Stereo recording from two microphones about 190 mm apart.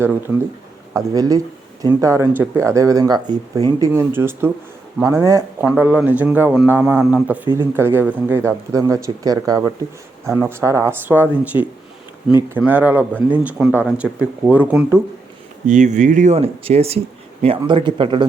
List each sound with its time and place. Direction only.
0.0 s speech: 10° right (ahead or behind)
15.6 s speech: 40° right (ahead or behind)